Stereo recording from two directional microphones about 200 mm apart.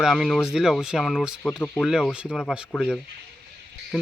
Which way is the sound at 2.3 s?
5° left (ahead or behind).